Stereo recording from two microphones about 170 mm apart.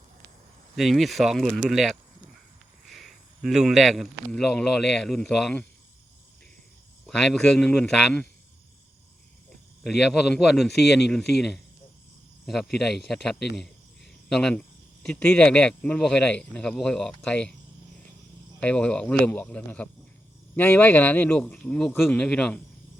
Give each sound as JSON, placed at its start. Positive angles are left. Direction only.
{"t": 0.8, "sound": "speech", "side_deg": 0}
{"t": 7.1, "sound": "speech", "side_deg": 5}
{"t": 9.8, "sound": "speech", "side_deg": 0}
{"t": 13.6, "sound": "a sound", "side_deg": 0}
{"t": 15.0, "sound": "speech", "side_deg": 5}
{"t": 18.6, "sound": "speech", "side_deg": 5}